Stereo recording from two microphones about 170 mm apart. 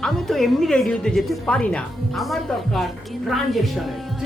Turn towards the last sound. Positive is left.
turn(degrees=0)  # may be behind; listen again after turning